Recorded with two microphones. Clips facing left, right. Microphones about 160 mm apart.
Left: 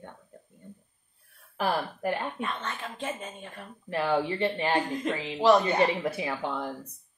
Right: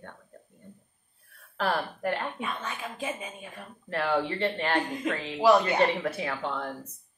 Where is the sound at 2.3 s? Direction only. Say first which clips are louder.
Left 1 dB; 5° right (ahead or behind).